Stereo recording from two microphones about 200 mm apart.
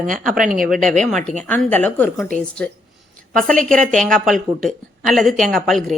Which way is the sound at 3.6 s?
40° right (ahead or behind).